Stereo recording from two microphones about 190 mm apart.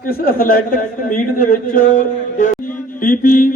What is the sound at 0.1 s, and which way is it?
A man's voice, 50° left (ahead or behind).